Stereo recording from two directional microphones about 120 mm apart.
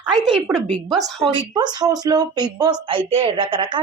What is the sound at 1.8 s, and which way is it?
A woman's voice, 35° right (ahead or behind).